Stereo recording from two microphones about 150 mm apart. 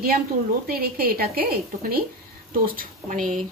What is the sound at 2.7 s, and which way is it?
Speech, 60° right (ahead or behind).